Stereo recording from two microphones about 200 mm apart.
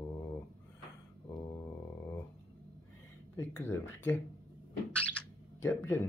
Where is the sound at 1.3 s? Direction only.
20° left (ahead or behind).